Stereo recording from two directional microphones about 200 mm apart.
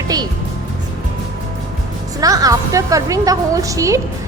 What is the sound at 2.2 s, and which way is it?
A woman's voice, 15° right (ahead or behind).